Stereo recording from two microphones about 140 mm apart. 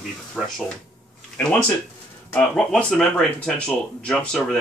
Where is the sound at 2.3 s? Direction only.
10° left (ahead or behind).